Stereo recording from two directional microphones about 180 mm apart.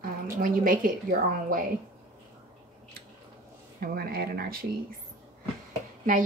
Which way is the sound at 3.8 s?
60° right (ahead or behind).